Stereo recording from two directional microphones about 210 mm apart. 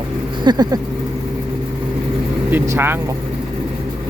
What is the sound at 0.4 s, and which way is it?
Vehicle, 20° right (ahead or behind).